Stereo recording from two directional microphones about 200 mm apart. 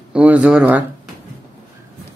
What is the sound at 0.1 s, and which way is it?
Speech, 5° right (ahead or behind).